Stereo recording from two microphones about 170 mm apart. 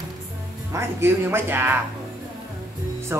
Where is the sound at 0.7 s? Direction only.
15° right (ahead or behind).